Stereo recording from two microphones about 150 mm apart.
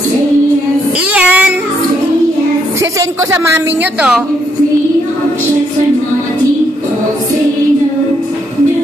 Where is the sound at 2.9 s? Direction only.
20° right (ahead or behind).